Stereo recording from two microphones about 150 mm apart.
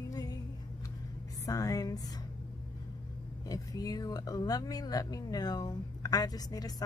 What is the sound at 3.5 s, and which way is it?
Speech, 25° left (ahead or behind).